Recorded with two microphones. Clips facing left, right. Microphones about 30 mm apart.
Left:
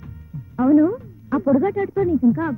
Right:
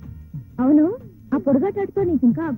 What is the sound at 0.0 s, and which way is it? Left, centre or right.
A man's voice, left.